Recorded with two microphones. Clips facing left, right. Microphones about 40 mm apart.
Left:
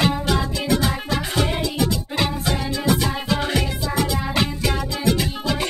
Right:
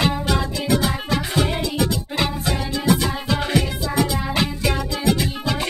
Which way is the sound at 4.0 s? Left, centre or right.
Centre.